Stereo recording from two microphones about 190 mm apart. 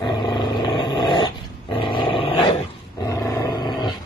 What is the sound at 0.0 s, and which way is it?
Dog, 25° left (ahead or behind).